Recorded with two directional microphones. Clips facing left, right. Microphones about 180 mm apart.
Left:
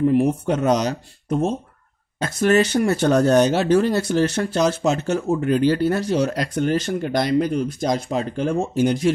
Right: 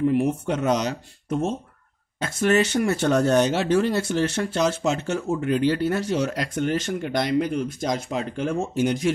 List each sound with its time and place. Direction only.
0.0 s speech: 40° left (ahead or behind)